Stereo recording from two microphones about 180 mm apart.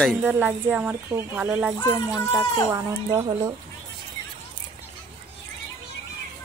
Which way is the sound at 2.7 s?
20° right (ahead or behind).